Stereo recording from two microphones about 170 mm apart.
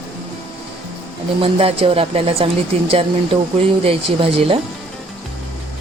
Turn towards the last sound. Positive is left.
turn(degrees=-35)  # may be behind; listen again after turning